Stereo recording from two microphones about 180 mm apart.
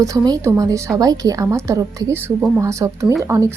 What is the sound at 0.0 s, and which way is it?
A woman's voice, 20° right (ahead or behind).